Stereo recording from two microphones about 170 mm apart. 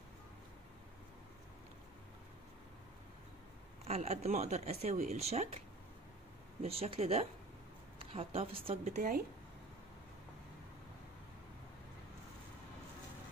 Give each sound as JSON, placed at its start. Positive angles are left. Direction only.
{"t": 3.8, "sound": "speech", "side_deg": -40}
{"t": 6.6, "sound": "speech", "side_deg": -35}
{"t": 8.8, "sound": "speech", "side_deg": -50}